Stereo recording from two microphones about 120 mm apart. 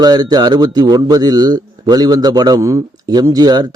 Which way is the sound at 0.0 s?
35° right (ahead or behind).